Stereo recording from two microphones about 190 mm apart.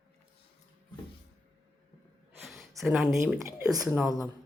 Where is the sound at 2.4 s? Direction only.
Centre (ahead or behind).